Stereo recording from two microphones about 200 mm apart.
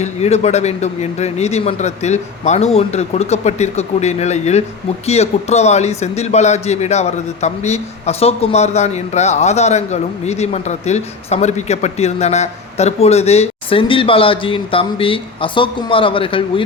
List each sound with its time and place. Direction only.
0.0 s a man's voice: 35° left (ahead or behind)